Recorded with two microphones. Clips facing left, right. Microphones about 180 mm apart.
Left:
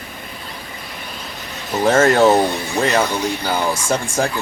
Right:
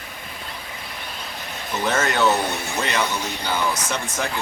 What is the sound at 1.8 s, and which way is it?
Speech, 45° left (ahead or behind).